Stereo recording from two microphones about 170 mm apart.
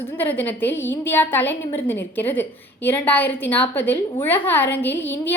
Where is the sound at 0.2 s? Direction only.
10° left (ahead or behind).